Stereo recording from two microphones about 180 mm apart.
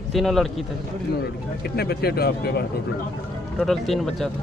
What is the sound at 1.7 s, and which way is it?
Speech, 60° left (ahead or behind).